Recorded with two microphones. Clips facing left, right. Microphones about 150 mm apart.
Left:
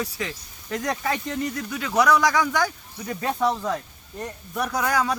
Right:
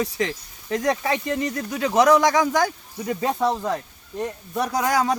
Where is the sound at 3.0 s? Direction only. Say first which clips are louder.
Right 2 dB; 20° right (ahead or behind).